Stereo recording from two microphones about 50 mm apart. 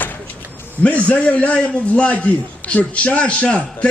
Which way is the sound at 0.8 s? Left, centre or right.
Left.